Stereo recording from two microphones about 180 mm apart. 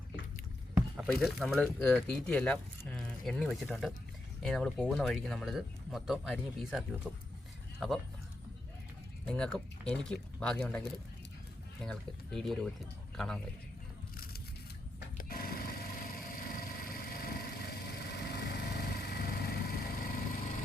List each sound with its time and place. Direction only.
1.2 s speech: centre (ahead or behind)
9.2 s a man's voice: 5° left (ahead or behind)
15.2 s a sound: 55° left (ahead or behind)